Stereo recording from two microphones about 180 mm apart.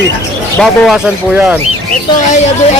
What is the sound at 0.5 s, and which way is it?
Speech, centre (ahead or behind).